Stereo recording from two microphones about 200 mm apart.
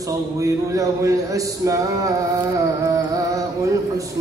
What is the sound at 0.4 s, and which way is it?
Speech, 15° right (ahead or behind).